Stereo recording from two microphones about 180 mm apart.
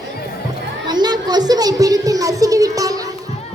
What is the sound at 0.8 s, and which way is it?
A child's voice, 25° right (ahead or behind).